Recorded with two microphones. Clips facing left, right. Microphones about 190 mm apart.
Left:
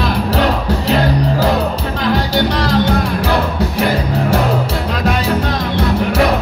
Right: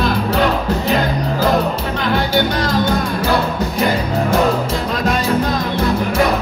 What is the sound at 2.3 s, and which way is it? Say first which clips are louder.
Music: left 2 dB; 35° left (ahead or behind).